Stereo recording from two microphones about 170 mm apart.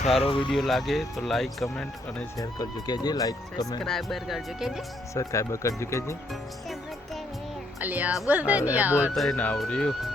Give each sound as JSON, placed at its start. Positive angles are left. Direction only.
{"t": 0.2, "sound": "speech", "side_deg": 30}
{"t": 0.5, "sound": "speech", "side_deg": 0}
{"t": 2.4, "sound": "speech", "side_deg": 20}
{"t": 3.8, "sound": "speech", "side_deg": 0}
{"t": 5.1, "sound": "speech", "side_deg": 15}
{"t": 7.8, "sound": "a woman's voice", "side_deg": -10}
{"t": 9.1, "sound": "speech", "side_deg": 5}